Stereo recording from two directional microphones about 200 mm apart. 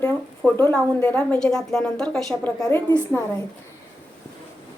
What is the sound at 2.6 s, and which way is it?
Speech, 15° left (ahead or behind).